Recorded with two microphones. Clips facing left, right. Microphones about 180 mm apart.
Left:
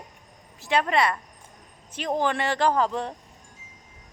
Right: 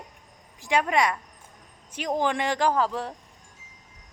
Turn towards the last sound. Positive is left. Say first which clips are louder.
# left 1 dB
turn(degrees=-5)  # may be behind; listen again after turning